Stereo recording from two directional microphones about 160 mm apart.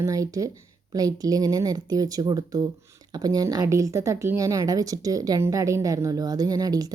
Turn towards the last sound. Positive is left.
turn(degrees=-25)  # may be behind; listen again after turning